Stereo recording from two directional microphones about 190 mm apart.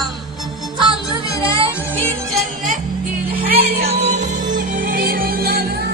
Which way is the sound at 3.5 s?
35° right (ahead or behind).